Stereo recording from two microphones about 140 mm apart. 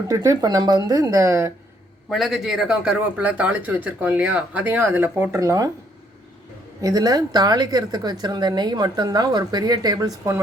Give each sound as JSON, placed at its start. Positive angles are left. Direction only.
{"t": 0.1, "sound": "speech", "side_deg": -25}
{"t": 2.0, "sound": "speech", "side_deg": 0}
{"t": 6.8, "sound": "speech", "side_deg": -25}